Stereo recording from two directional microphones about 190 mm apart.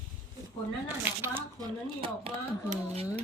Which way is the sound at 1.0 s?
10° right (ahead or behind).